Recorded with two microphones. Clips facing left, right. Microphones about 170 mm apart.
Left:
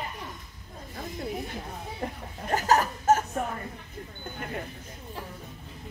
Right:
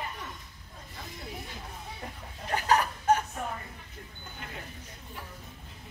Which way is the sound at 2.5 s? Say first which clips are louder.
Left 3 dB; 45° left (ahead or behind).